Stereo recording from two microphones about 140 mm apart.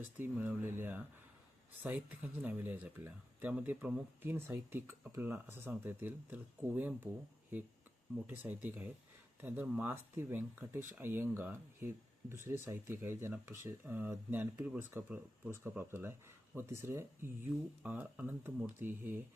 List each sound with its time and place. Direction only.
0.0 s speech: 15° right (ahead or behind)
8.1 s speech: 15° right (ahead or behind)